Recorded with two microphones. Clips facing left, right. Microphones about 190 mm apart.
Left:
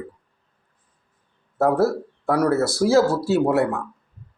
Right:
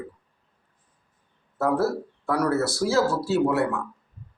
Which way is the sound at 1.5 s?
45° left (ahead or behind).